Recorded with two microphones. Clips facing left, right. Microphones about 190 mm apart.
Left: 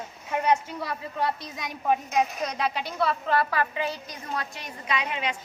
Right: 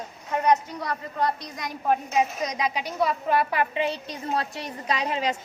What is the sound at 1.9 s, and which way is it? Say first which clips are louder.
A woman's voice: right 1 dB; 5° right (ahead or behind).